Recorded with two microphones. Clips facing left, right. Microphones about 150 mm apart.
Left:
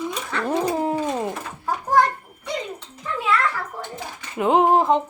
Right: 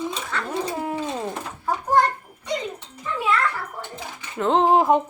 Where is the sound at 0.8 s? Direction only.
30° left (ahead or behind).